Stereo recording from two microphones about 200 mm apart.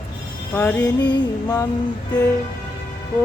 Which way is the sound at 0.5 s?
10° left (ahead or behind).